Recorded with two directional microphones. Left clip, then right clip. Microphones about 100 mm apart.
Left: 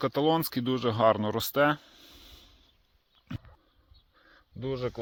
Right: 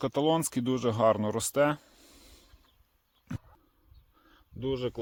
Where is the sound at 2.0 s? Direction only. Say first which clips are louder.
Left 5 dB; 30° right (ahead or behind).